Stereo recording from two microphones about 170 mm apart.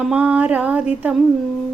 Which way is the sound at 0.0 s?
5° right (ahead or behind).